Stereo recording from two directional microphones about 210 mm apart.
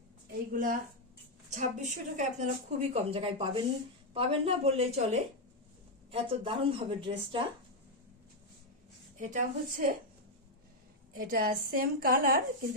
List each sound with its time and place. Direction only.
0.5 s a woman's voice: 40° right (ahead or behind)
6.1 s a woman's voice: 25° right (ahead or behind)
9.2 s a woman's voice: 40° right (ahead or behind)
11.1 s a woman's voice: 45° right (ahead or behind)